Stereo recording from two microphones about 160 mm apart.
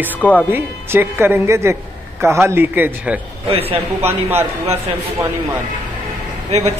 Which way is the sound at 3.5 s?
40° right (ahead or behind).